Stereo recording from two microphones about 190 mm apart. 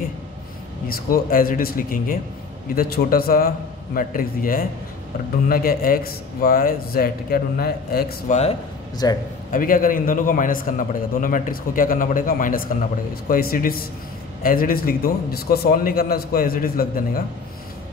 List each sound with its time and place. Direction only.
0.8 s a man's voice: 50° left (ahead or behind)
9.0 s a man's voice: 20° left (ahead or behind)
9.5 s a man's voice: 45° left (ahead or behind)